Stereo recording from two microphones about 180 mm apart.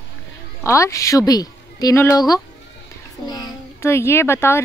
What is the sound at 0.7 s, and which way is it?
A woman's voice, 15° left (ahead or behind).